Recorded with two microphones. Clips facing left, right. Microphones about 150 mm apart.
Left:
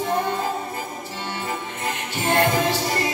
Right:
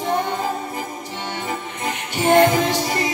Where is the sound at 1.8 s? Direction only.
15° right (ahead or behind).